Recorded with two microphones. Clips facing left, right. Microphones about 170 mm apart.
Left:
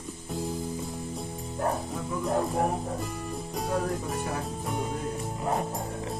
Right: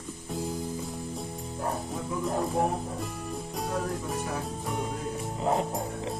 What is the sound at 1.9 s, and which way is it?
Music, centre (ahead or behind).